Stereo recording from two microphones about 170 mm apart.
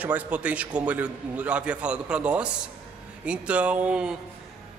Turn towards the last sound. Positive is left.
turn(degrees=-5)  # may be behind; listen again after turning